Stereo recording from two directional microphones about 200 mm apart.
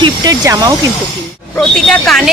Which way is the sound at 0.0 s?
20° right (ahead or behind).